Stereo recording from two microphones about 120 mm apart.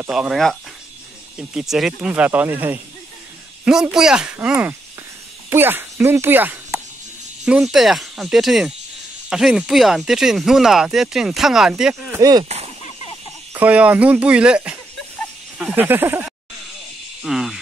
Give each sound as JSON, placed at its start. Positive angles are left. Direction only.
{"t": 0.1, "sound": "speech", "side_deg": -5}
{"t": 3.6, "sound": "speech", "side_deg": -5}
{"t": 7.4, "sound": "speech", "side_deg": -5}
{"t": 11.9, "sound": "speech", "side_deg": -25}
{"t": 13.5, "sound": "speech", "side_deg": -10}
{"t": 17.2, "sound": "speech", "side_deg": 0}